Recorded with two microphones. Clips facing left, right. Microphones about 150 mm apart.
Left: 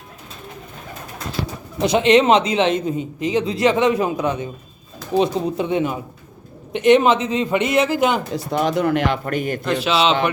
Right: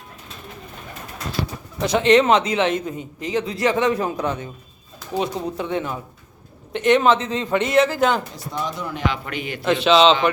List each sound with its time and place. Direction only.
1.8 s a man's voice: 20° left (ahead or behind)
8.5 s speech: 70° left (ahead or behind)
9.1 s a man's voice: 45° left (ahead or behind)
9.6 s a man's voice: 5° left (ahead or behind)